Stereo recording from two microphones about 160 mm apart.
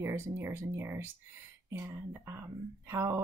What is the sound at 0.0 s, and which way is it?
Speech, 15° right (ahead or behind).